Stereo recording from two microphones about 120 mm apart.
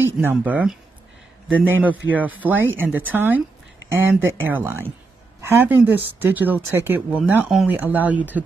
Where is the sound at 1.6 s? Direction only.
15° right (ahead or behind).